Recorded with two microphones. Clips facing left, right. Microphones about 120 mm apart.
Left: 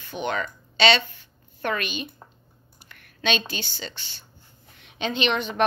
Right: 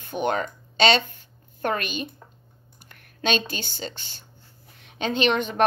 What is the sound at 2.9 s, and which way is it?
A woman's voice, 45° right (ahead or behind).